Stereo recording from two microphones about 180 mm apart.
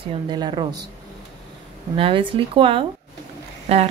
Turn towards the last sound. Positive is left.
turn(degrees=-35)  # may be behind; listen again after turning